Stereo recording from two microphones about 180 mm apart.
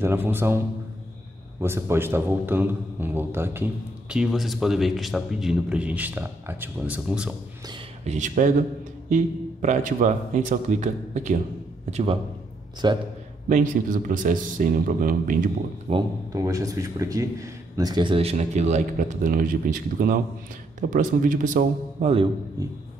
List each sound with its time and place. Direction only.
0.0 s a man's voice: 10° right (ahead or behind)
1.6 s a man's voice: 15° right (ahead or behind)
8.0 s a man's voice: 40° right (ahead or behind)
12.8 s a man's voice: 25° right (ahead or behind)
13.5 s a man's voice: 45° right (ahead or behind)
15.9 s speech: 35° right (ahead or behind)
16.3 s a man's voice: 20° right (ahead or behind); by 22.1 s 50° right (ahead or behind)